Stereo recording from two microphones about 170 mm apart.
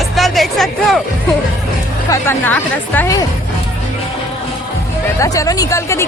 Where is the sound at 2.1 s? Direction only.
10° left (ahead or behind).